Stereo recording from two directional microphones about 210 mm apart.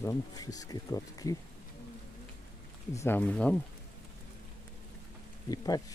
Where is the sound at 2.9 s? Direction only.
10° left (ahead or behind).